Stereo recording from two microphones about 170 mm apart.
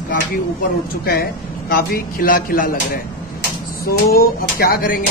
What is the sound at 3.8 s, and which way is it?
Speech, 65° left (ahead or behind).